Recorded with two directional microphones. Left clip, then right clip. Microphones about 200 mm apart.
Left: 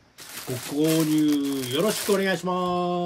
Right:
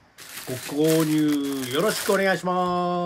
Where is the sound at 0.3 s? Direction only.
15° left (ahead or behind).